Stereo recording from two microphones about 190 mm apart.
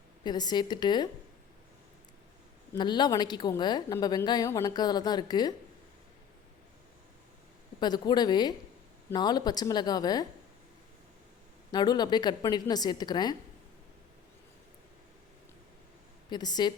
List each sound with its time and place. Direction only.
0.3 s speech: 20° left (ahead or behind)
2.7 s speech: 25° left (ahead or behind)
7.8 s speech: 20° left (ahead or behind)
11.7 s speech: 20° left (ahead or behind)
16.3 s speech: 20° left (ahead or behind)